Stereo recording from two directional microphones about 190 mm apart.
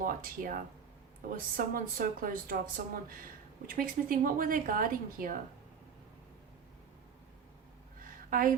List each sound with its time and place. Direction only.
0.0 s speech: 45° right (ahead or behind)
8.3 s a woman's voice: 45° right (ahead or behind)